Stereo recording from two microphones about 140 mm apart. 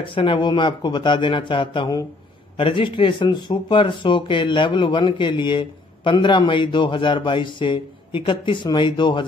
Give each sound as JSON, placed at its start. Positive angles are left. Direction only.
{"t": 0.0, "sound": "speech", "side_deg": 35}